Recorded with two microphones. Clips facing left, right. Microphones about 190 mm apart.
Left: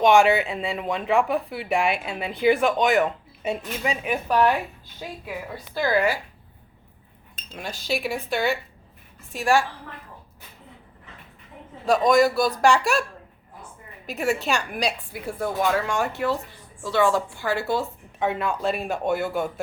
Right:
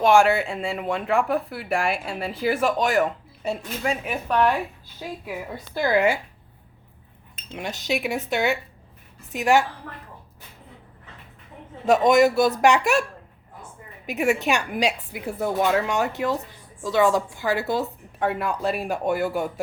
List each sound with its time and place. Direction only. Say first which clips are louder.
0.0 s speech: even; centre (ahead or behind)
5.7 s speech: right 2 dB; 20° right (ahead or behind)
7.5 s speech: right 2 dB; 20° right (ahead or behind)
11.9 s speech: right 2 dB; 20° right (ahead or behind)
14.1 s a woman's voice: right 2 dB; 15° right (ahead or behind)